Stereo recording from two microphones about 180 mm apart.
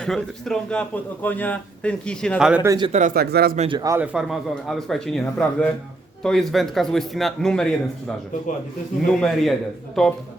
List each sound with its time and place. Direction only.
0.0 s a man's voice: 5° left (ahead or behind)
2.6 s a man's voice: 25° right (ahead or behind)
3.2 s speech: 60° right (ahead or behind)
3.6 s a man's voice: 25° right (ahead or behind)
3.9 s a man's voice: 5° right (ahead or behind)
9.0 s a man's voice: centre (ahead or behind)